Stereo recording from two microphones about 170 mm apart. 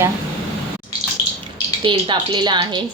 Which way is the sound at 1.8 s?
25° right (ahead or behind).